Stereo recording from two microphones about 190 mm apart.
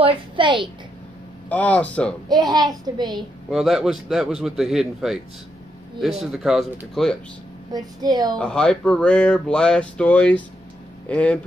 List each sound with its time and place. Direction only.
0.0 s a woman's voice: 25° right (ahead or behind)
1.5 s speech: 10° left (ahead or behind)
2.2 s a child's voice: 20° right (ahead or behind)
3.4 s speech: centre (ahead or behind)
6.2 s speech: centre (ahead or behind)
7.7 s a child's voice: 20° right (ahead or behind)
8.4 s speech: 5° left (ahead or behind)